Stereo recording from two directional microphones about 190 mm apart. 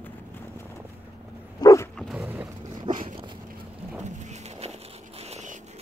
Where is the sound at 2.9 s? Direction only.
45° right (ahead or behind).